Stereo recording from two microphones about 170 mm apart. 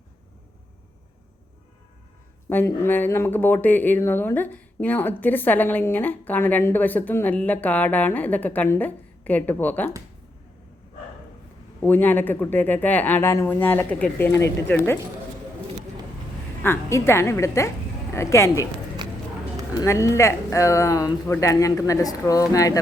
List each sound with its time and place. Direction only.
2.5 s speech: 10° left (ahead or behind)
11.8 s speech: 10° left (ahead or behind)
16.6 s speech: 15° left (ahead or behind)
19.8 s speech: 15° left (ahead or behind)